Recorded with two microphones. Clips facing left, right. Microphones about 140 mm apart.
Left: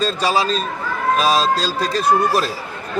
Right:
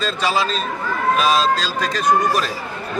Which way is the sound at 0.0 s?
40° left (ahead or behind).